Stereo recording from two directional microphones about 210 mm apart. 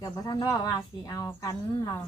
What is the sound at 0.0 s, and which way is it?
Speech, 15° left (ahead or behind).